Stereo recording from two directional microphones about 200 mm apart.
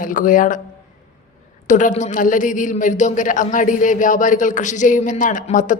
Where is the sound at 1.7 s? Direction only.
40° left (ahead or behind).